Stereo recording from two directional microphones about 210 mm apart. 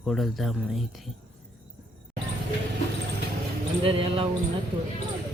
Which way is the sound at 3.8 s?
25° right (ahead or behind).